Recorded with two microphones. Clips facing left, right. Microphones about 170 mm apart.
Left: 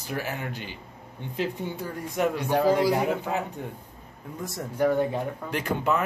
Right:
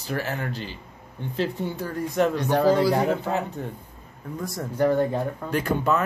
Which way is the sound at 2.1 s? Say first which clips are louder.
Right 2 dB; 10° left (ahead or behind).